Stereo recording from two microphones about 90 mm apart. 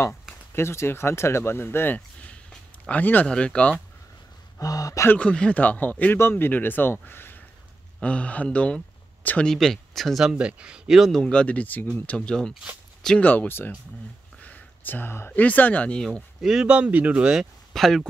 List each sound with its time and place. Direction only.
0.6 s speech: 30° left (ahead or behind)
2.0 s a sound: 15° left (ahead or behind)
2.9 s speech: 20° left (ahead or behind)
4.6 s speech: 40° left (ahead or behind)
5.0 s speech: 15° left (ahead or behind)
9.5 s speech: 5° left (ahead or behind)
12.1 s speech: 10° left (ahead or behind)
13.2 s speech: 20° left (ahead or behind)
16.3 s speech: 5° right (ahead or behind)